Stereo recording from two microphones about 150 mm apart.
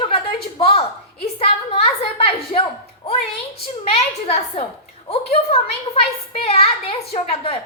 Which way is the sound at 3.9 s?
45° left (ahead or behind).